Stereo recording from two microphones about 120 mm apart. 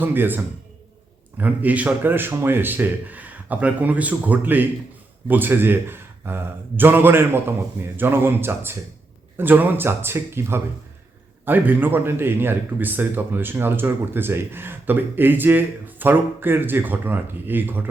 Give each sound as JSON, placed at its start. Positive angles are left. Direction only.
{"t": 0.0, "sound": "a man's voice", "side_deg": -15}
{"t": 1.4, "sound": "a man's voice", "side_deg": -15}